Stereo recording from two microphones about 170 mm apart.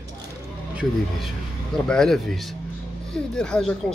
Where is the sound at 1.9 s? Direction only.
Centre (ahead or behind).